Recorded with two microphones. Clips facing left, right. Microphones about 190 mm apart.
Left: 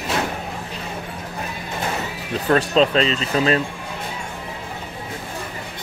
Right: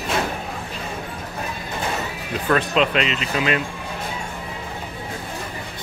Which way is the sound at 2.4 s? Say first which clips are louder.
Left 3 dB; 35° left (ahead or behind).